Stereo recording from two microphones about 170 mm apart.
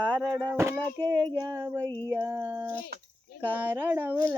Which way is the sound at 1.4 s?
25° right (ahead or behind).